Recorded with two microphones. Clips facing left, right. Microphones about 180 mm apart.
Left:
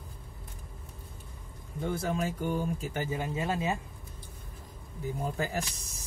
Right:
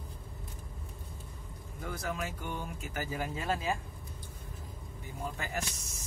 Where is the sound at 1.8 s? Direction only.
30° left (ahead or behind).